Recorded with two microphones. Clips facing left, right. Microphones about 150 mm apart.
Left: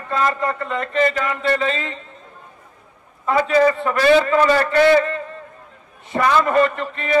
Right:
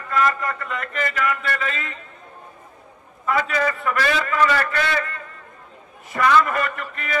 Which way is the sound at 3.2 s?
30° left (ahead or behind).